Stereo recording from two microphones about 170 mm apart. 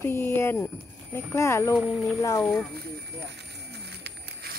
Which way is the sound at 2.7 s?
70° right (ahead or behind).